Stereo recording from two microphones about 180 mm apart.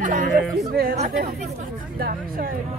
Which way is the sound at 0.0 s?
45° right (ahead or behind).